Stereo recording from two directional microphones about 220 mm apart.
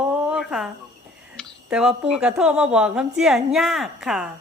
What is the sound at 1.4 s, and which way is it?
Speech, 5° right (ahead or behind).